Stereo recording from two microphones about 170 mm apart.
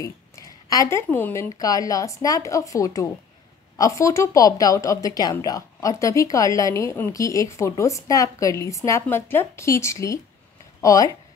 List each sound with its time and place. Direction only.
0.0 s a woman's voice: 20° left (ahead or behind)